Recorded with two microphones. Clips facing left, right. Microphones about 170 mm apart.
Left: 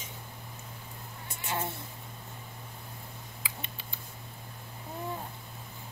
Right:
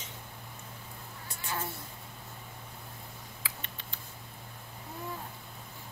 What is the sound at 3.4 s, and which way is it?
Mouse, 15° left (ahead or behind).